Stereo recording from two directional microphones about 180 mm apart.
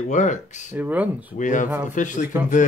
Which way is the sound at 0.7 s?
10° right (ahead or behind).